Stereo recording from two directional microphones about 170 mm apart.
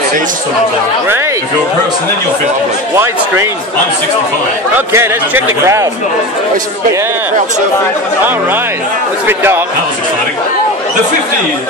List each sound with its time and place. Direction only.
4.7 s speech: 15° right (ahead or behind)
9.3 s speech: 15° right (ahead or behind)